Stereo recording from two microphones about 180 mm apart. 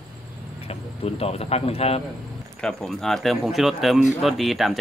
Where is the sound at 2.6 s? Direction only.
5° left (ahead or behind).